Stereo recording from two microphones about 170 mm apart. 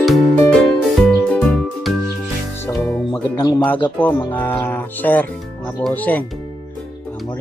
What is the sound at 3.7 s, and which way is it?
Speech, 10° left (ahead or behind).